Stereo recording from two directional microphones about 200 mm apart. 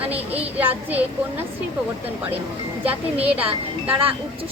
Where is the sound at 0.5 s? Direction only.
10° right (ahead or behind).